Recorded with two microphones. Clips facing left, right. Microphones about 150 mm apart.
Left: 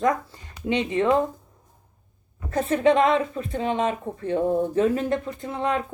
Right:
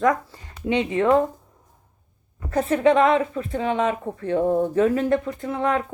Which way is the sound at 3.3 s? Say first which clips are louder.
Right 2 dB; 25° left (ahead or behind).